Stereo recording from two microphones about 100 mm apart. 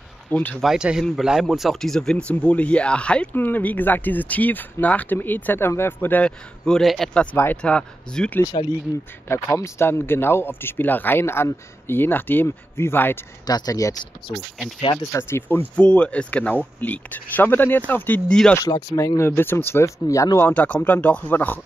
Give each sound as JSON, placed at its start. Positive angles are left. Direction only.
{"t": 0.3, "sound": "speech", "side_deg": 15}
{"t": 0.6, "sound": "speech", "side_deg": -5}
{"t": 9.3, "sound": "speech", "side_deg": 25}
{"t": 13.5, "sound": "speech", "side_deg": 40}
{"t": 15.1, "sound": "speech", "side_deg": 25}
{"t": 18.6, "sound": "speech", "side_deg": 35}
{"t": 20.4, "sound": "speech", "side_deg": 15}